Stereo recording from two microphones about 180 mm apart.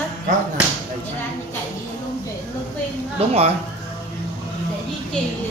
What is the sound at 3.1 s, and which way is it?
Speech, 35° right (ahead or behind).